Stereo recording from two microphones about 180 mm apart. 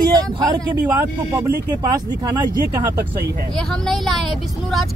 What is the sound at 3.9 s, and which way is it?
Speech, centre (ahead or behind).